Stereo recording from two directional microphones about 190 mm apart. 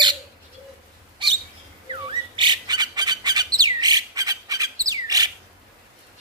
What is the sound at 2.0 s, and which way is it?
Bird, 25° right (ahead or behind).